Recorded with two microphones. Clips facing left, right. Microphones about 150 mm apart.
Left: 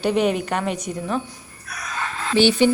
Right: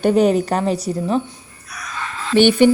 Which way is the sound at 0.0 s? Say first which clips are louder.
Right 5 dB; 40° right (ahead or behind).